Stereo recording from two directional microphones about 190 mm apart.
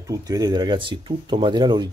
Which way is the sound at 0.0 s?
20° right (ahead or behind).